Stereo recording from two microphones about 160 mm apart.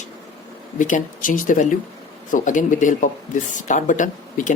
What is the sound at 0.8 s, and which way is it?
Speech, 55° left (ahead or behind).